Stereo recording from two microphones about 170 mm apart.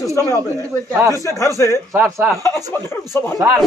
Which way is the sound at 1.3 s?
15° left (ahead or behind).